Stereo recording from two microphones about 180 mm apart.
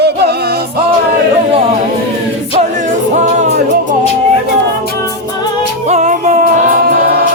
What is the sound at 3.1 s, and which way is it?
Music, 40° right (ahead or behind).